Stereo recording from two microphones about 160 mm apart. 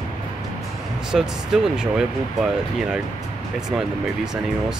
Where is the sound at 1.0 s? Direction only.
5° right (ahead or behind).